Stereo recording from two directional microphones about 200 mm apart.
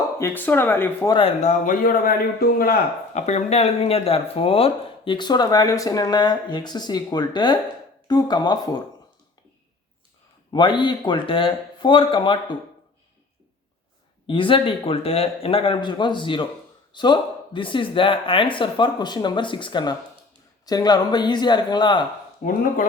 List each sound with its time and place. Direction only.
0.2 s speech: 10° left (ahead or behind)
1.1 s a man's voice: 30° left (ahead or behind); by 2.7 s 45° left (ahead or behind)
3.2 s speech: 35° left (ahead or behind)
10.5 s speech: 25° left (ahead or behind)
14.3 s speech: 25° left (ahead or behind)
22.4 s a man's voice: 40° left (ahead or behind)